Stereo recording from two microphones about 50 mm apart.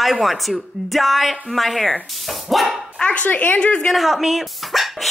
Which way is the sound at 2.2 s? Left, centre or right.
Centre.